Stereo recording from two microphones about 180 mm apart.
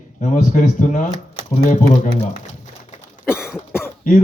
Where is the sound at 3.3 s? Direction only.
5° right (ahead or behind).